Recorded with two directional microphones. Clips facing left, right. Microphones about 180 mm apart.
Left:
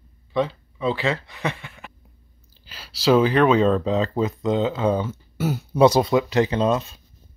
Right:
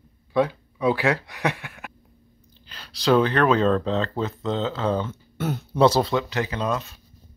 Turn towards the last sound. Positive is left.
turn(degrees=25)  # may be behind; listen again after turning